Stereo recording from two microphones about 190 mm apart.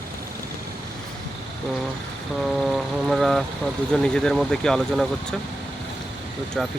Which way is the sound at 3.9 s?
5° left (ahead or behind).